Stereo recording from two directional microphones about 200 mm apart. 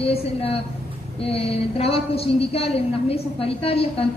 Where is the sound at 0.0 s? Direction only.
30° left (ahead or behind).